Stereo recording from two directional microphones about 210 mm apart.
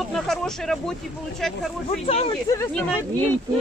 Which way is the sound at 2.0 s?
30° left (ahead or behind).